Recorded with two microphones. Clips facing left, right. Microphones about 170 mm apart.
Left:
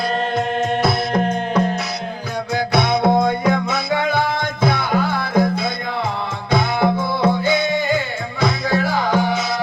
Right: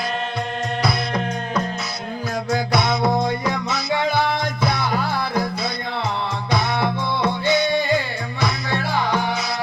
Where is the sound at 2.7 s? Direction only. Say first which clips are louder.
Left 5 dB; 55° left (ahead or behind).